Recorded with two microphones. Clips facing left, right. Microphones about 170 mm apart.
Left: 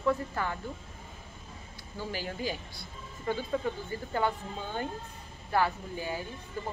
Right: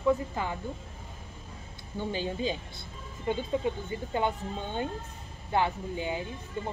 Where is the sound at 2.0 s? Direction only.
20° right (ahead or behind).